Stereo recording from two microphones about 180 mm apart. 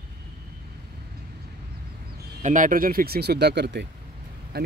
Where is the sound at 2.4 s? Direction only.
45° right (ahead or behind); by 3.9 s 70° right (ahead or behind).